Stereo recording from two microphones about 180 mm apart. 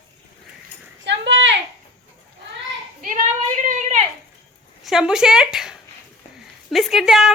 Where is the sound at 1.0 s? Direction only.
85° right.